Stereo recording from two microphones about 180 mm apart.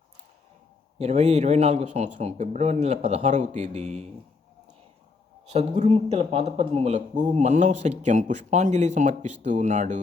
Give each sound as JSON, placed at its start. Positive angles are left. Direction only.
{"t": 0.9, "sound": "speech", "side_deg": -40}
{"t": 5.5, "sound": "speech", "side_deg": -35}